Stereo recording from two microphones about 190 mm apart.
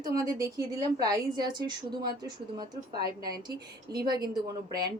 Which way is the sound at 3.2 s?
55° right (ahead or behind).